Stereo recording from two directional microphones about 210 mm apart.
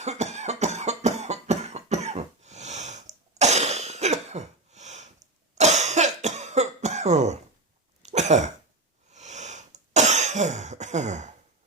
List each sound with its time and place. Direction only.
0.0 s cough: 30° right (ahead or behind)